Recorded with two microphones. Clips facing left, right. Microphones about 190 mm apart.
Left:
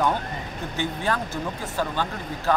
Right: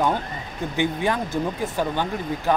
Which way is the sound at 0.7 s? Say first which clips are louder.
Right 4 dB; 15° right (ahead or behind).